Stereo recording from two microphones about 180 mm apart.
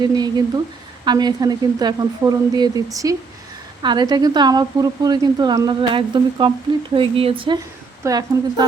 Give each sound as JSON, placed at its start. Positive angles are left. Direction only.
{"t": 0.2, "sound": "a woman's voice", "side_deg": -20}